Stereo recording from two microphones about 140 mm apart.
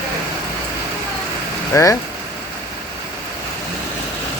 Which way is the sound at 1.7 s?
20° left (ahead or behind).